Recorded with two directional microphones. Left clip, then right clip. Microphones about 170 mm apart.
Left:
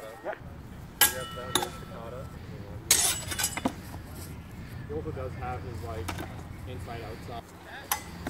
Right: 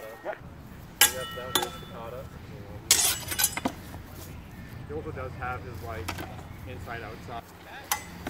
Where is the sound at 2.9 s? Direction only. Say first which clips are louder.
Right 2 dB; 10° left (ahead or behind).